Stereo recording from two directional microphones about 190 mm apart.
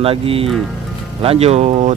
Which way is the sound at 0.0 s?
30° right (ahead or behind).